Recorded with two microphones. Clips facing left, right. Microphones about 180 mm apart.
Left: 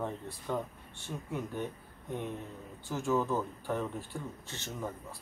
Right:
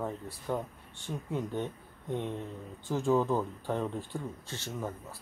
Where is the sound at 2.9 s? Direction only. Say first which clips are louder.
Right 3 dB; 15° right (ahead or behind).